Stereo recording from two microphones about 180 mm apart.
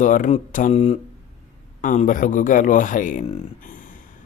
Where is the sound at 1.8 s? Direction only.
45° left (ahead or behind).